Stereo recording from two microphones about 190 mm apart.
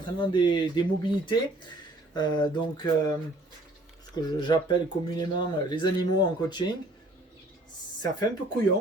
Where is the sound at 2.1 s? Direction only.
20° left (ahead or behind).